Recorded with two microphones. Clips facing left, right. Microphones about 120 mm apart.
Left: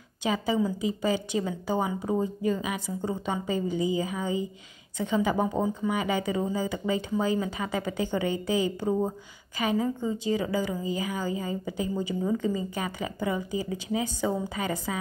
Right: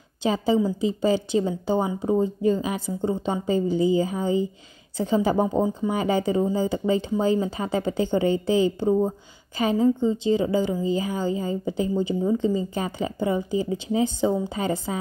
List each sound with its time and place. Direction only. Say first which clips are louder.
0.2 s a woman's voice: right 5 dB; 30° right (ahead or behind)